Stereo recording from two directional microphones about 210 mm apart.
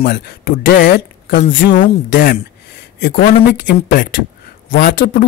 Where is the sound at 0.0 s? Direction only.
45° left (ahead or behind).